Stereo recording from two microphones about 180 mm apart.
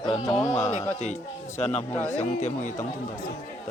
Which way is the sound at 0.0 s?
35° left (ahead or behind).